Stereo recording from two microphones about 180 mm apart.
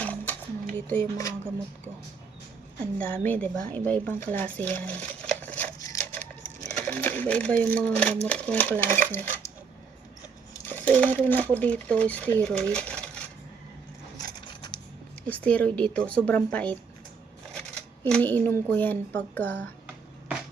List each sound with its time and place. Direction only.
0.0 s a sound: 10° left (ahead or behind)
0.9 s speech: 10° left (ahead or behind)
3.0 s speech: 5° left (ahead or behind)
10.7 s speech: 10° left (ahead or behind)
14.4 s a sound: 25° left (ahead or behind)
15.3 s speech: 10° left (ahead or behind)